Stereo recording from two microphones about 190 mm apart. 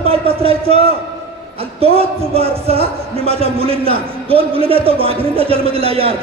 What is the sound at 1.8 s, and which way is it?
A man's voice, 30° right (ahead or behind).